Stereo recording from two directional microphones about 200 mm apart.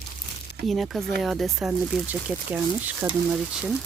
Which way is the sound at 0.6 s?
Centre (ahead or behind).